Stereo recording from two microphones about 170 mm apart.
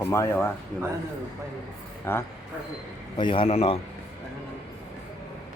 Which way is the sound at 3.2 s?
30° left (ahead or behind).